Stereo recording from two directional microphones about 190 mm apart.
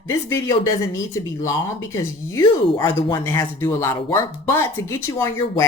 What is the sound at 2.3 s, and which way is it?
Speech, 20° left (ahead or behind).